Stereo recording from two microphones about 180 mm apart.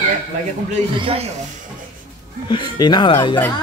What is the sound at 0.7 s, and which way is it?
Speech, 35° right (ahead or behind).